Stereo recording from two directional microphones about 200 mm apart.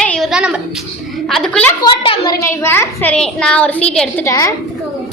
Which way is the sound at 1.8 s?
25° left (ahead or behind).